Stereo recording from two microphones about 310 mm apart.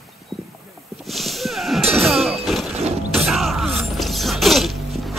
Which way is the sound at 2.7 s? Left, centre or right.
Centre.